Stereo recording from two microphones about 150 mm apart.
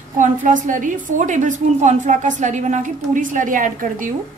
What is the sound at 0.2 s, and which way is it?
A woman's voice, 60° right (ahead or behind).